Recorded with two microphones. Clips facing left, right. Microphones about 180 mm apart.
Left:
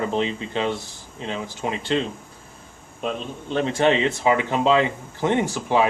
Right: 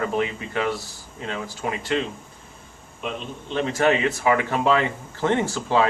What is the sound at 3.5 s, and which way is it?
Speech, 30° left (ahead or behind).